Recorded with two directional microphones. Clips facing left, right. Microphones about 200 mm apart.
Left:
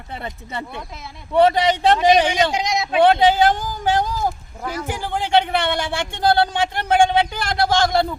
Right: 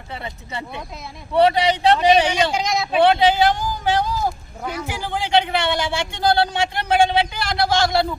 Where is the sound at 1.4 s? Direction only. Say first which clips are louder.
Left 1 dB; 45° left (ahead or behind).